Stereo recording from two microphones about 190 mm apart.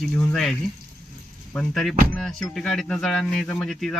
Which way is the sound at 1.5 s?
Centre (ahead or behind).